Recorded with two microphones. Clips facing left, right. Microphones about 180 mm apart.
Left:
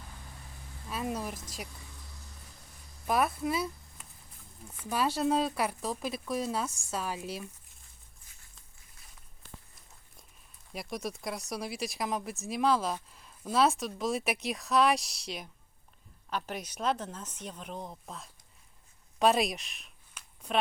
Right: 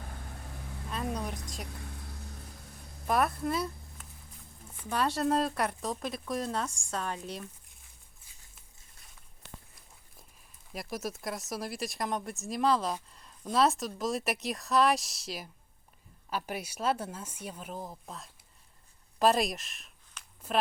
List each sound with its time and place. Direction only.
0.0 s vehicle: 55° right (ahead or behind)
0.9 s a sound: 5° left (ahead or behind)
1.6 s vehicle: 60° right (ahead or behind)
3.1 s speech: centre (ahead or behind)
10.7 s speech: centre (ahead or behind)
20.2 s a sound: 10° left (ahead or behind)